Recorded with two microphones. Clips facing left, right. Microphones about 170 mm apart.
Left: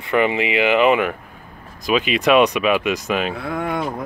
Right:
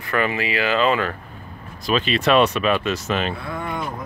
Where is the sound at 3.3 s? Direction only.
70° left (ahead or behind).